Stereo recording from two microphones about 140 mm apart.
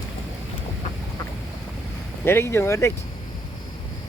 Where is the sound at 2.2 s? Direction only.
15° left (ahead or behind).